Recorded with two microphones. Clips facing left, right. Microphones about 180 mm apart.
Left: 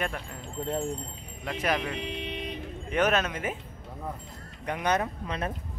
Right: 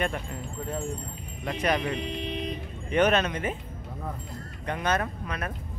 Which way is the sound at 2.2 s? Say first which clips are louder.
Right 3 dB; 40° right (ahead or behind).